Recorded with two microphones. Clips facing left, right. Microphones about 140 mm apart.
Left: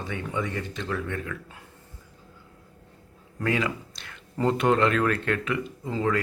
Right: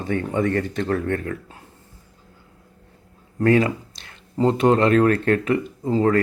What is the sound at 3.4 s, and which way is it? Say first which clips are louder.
Speech: right 9 dB; 45° right (ahead or behind).